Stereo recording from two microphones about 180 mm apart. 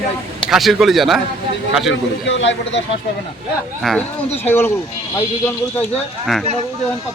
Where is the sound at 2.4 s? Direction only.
90° left.